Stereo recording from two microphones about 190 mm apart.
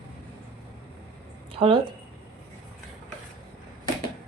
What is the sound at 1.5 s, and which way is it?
Speech, 30° right (ahead or behind).